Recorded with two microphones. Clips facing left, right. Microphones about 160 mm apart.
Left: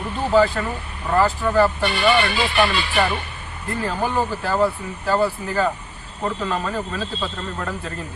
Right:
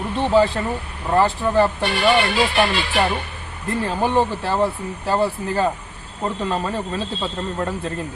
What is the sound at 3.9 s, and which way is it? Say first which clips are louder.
Speech: right 3 dB; 25° right (ahead or behind).